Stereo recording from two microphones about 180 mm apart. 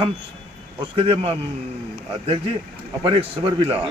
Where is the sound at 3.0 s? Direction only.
30° right (ahead or behind).